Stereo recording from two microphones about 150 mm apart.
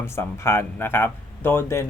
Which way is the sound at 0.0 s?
15° left (ahead or behind).